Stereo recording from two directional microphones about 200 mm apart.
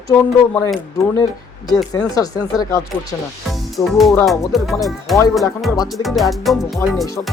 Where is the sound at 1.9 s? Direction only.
20° left (ahead or behind).